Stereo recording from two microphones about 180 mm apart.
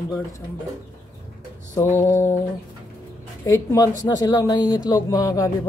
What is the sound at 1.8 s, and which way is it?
Speech, 15° left (ahead or behind).